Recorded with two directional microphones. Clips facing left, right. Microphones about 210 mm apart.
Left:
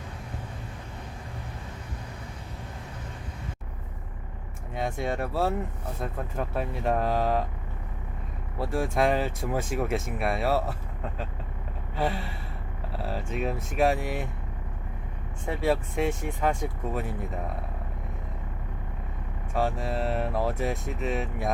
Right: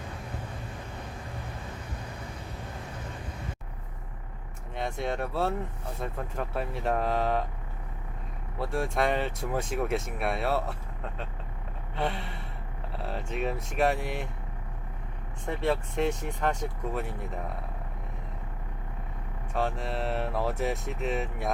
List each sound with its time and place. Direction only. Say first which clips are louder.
4.7 s speech: left 2 dB; centre (ahead or behind)
8.5 s speech: left 2 dB; centre (ahead or behind)
11.9 s speech: left 3 dB; 5° left (ahead or behind)
15.4 s speech: left 2 dB; 5° left (ahead or behind)
19.5 s speech: left 3 dB; 5° left (ahead or behind)